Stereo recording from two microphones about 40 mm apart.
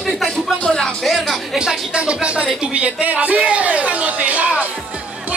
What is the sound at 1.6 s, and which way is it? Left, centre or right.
Speech, right.